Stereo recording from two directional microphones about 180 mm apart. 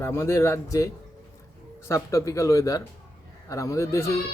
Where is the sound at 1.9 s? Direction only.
15° left (ahead or behind).